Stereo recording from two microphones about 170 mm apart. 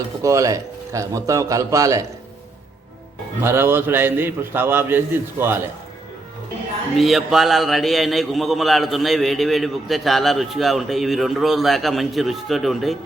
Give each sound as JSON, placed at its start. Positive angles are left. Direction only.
{"t": 0.2, "sound": "speech", "side_deg": -20}
{"t": 3.4, "sound": "a man's voice", "side_deg": -15}
{"t": 6.9, "sound": "a man's voice", "side_deg": 0}